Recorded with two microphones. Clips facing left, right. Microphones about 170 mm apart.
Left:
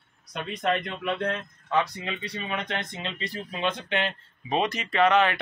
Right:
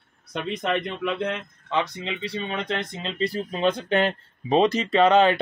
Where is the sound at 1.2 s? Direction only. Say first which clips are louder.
Right 1 dB; 20° right (ahead or behind).